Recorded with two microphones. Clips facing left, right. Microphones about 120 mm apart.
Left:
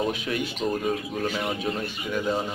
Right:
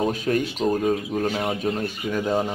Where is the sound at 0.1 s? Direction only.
40° right (ahead or behind).